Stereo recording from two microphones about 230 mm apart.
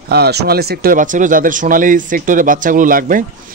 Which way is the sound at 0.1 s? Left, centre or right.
Right.